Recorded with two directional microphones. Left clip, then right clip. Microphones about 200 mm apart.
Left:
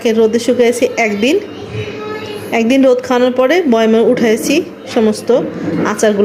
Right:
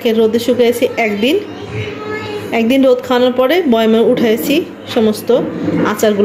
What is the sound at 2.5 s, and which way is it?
A woman's voice, 5° left (ahead or behind).